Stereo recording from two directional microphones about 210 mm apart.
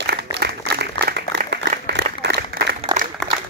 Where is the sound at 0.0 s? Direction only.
50° right (ahead or behind).